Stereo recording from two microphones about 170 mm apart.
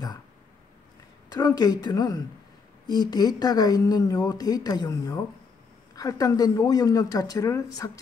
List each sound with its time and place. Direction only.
1.3 s speech: 25° left (ahead or behind)